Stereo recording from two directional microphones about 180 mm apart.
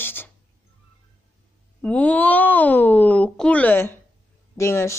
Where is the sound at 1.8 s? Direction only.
5° left (ahead or behind).